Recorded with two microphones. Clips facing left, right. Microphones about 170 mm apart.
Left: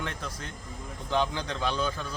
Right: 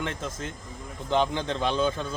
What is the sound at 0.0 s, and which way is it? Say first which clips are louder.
A man's voice: right 4 dB; 20° right (ahead or behind).